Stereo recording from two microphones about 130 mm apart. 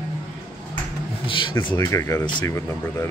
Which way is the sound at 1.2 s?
40° left (ahead or behind).